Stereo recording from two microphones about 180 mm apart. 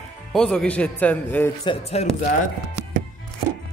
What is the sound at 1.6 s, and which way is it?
Speech, 30° left (ahead or behind).